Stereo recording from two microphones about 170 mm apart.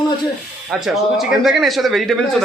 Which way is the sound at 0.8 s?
Centre (ahead or behind).